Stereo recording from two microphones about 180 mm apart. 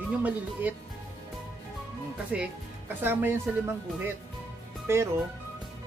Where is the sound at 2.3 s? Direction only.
5° right (ahead or behind).